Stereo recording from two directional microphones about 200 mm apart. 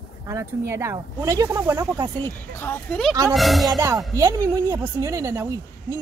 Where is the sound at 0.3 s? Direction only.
15° right (ahead or behind).